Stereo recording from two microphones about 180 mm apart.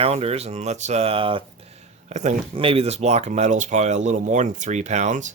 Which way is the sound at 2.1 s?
40° right (ahead or behind).